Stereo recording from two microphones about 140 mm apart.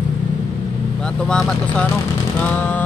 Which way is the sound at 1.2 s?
5° left (ahead or behind).